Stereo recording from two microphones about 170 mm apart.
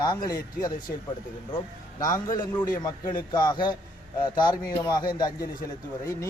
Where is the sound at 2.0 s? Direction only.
20° left (ahead or behind).